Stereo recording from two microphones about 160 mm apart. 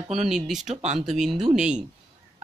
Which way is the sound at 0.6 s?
45° right (ahead or behind).